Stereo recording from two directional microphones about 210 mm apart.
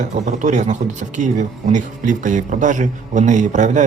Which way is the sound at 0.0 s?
35° right (ahead or behind).